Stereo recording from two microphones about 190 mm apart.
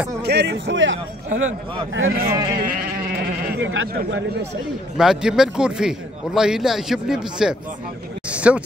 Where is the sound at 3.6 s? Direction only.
90° right.